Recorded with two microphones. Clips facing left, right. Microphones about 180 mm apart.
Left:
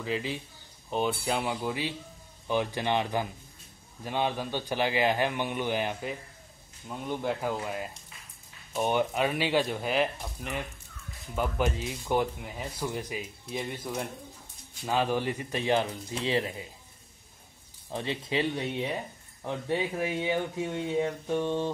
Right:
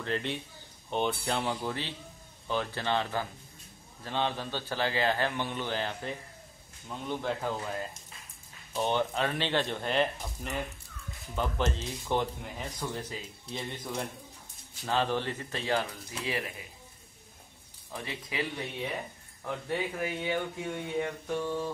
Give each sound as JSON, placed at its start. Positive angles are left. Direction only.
{"t": 0.0, "sound": "a man's voice", "side_deg": 5}
{"t": 17.9, "sound": "speech", "side_deg": 30}